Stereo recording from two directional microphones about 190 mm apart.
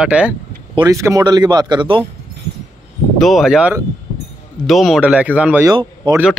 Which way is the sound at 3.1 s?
Centre (ahead or behind).